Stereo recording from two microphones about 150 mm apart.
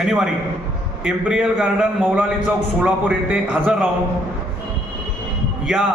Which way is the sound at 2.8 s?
10° right (ahead or behind).